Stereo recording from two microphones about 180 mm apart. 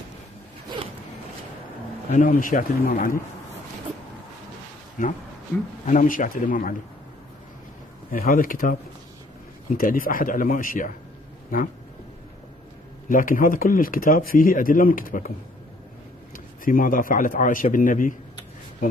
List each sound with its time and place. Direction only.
2.1 s speech: 45° left (ahead or behind)
5.0 s speech: 45° left (ahead or behind)
8.1 s speech: 50° left (ahead or behind)
13.1 s speech: 50° left (ahead or behind)
16.3 s speech: 50° left (ahead or behind)